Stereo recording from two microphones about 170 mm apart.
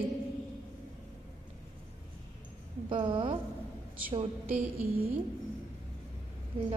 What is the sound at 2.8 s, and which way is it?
A woman's voice, 30° right (ahead or behind).